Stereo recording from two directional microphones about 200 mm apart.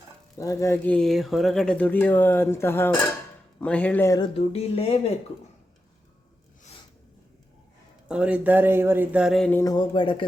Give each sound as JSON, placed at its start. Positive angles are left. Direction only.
{"t": 0.3, "sound": "speech", "side_deg": 15}
{"t": 4.4, "sound": "speech", "side_deg": 30}
{"t": 8.0, "sound": "speech", "side_deg": -5}
{"t": 9.7, "sound": "speech", "side_deg": 25}